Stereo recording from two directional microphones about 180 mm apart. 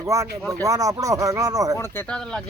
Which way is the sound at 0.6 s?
20° right (ahead or behind).